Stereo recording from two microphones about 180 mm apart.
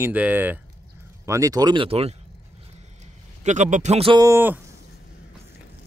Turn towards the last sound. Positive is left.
turn(degrees=-15)  # may be behind; listen again after turning